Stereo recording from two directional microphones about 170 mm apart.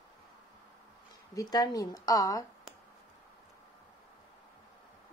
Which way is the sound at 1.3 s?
20° left (ahead or behind).